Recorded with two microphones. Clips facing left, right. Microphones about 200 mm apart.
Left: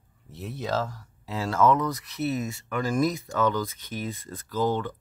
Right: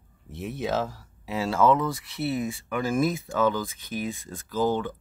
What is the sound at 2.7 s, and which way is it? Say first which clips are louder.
Speech: even; 10° right (ahead or behind).